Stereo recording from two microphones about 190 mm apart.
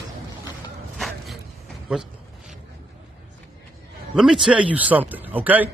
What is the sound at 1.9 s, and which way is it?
Speech, 5° right (ahead or behind).